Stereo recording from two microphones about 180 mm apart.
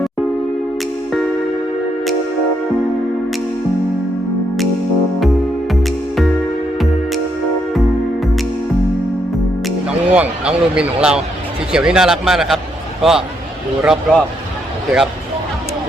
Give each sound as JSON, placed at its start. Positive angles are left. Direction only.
{"t": 5.7, "sound": "music", "side_deg": 0}
{"t": 9.6, "sound": "speech", "side_deg": -5}